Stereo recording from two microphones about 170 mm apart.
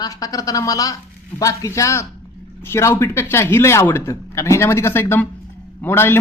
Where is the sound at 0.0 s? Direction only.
20° left (ahead or behind).